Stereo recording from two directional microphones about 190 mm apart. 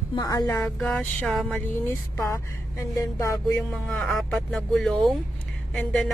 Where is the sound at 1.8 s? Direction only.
15° left (ahead or behind).